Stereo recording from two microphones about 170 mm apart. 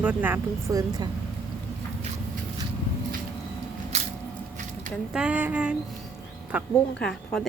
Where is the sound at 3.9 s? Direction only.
40° right (ahead or behind).